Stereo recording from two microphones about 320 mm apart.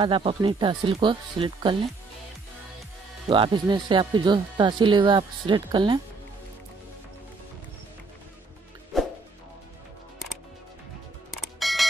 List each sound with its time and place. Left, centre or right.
0.0 s speech: centre
3.3 s speech: centre
11.6 s music: centre